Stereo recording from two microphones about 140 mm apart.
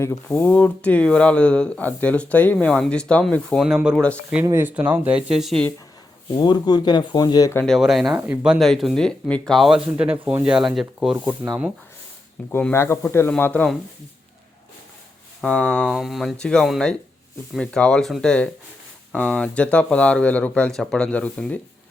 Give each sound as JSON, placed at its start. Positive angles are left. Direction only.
{"t": 0.3, "sound": "speech", "side_deg": 10}
{"t": 3.8, "sound": "speech", "side_deg": -5}
{"t": 6.3, "sound": "speech", "side_deg": 30}
{"t": 7.6, "sound": "speech", "side_deg": 0}
{"t": 8.5, "sound": "speech", "side_deg": 0}
{"t": 12.5, "sound": "speech", "side_deg": 15}
{"t": 15.4, "sound": "speech", "side_deg": 5}